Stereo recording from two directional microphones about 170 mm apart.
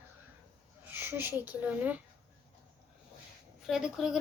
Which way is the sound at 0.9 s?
10° right (ahead or behind).